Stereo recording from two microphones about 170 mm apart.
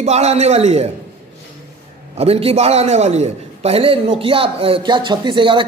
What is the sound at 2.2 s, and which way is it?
Speech, 35° right (ahead or behind).